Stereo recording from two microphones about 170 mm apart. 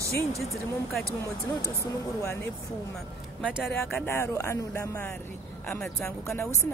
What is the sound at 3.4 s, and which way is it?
Speech, 5° right (ahead or behind).